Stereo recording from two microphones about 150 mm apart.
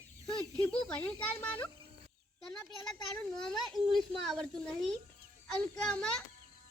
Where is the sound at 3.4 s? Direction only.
5° left (ahead or behind).